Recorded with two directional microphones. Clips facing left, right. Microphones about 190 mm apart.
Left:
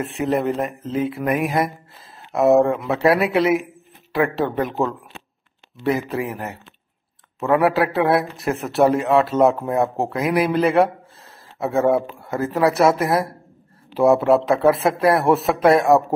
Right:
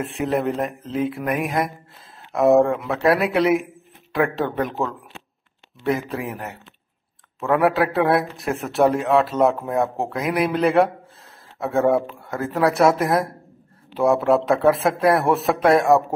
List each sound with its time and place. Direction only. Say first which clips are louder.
0.0 s a man's voice: left 1 dB; centre (ahead or behind)
5.9 s a man's voice: left 2 dB; centre (ahead or behind)